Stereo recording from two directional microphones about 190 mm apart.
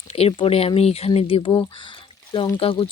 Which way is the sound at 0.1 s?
30° left (ahead or behind).